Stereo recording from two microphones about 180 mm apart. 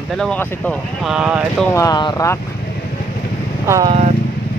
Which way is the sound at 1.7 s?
20° left (ahead or behind).